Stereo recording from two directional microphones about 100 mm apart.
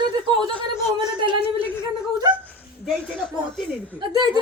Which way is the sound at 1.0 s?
60° right (ahead or behind).